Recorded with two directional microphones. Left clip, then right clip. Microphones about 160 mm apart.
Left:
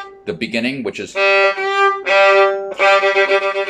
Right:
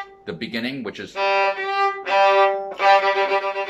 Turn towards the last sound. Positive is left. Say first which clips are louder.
# left 6 dB
turn(degrees=5)  # may be behind; listen again after turning